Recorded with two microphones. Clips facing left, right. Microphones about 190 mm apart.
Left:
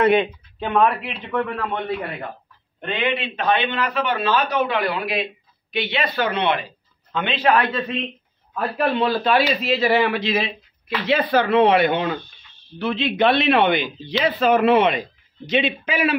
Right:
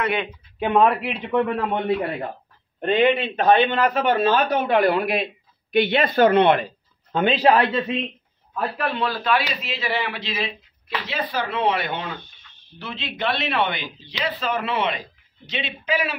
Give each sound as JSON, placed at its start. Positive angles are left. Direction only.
{"t": 0.0, "sound": "a man's voice", "side_deg": 25}
{"t": 0.6, "sound": "a man's voice", "side_deg": -15}
{"t": 2.8, "sound": "a man's voice", "side_deg": -45}
{"t": 8.7, "sound": "a man's voice", "side_deg": 25}
{"t": 9.6, "sound": "speech", "side_deg": 40}
{"t": 11.1, "sound": "speech", "side_deg": 65}